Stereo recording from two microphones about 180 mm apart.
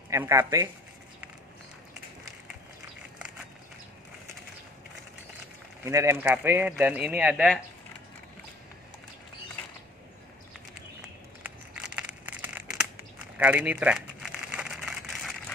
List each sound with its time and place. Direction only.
0.1 s speech: 15° right (ahead or behind)
5.9 s speech: 15° right (ahead or behind)
11.0 s crumpling: 5° right (ahead or behind)